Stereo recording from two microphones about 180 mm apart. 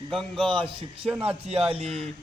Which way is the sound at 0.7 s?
30° right (ahead or behind).